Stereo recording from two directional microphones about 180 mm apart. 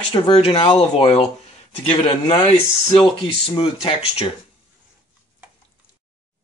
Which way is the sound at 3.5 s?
30° left (ahead or behind).